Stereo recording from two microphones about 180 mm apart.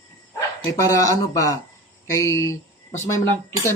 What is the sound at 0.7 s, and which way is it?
Speech, 15° left (ahead or behind).